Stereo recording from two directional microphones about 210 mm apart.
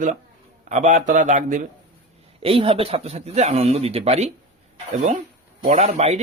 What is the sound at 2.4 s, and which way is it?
Speech, 25° right (ahead or behind).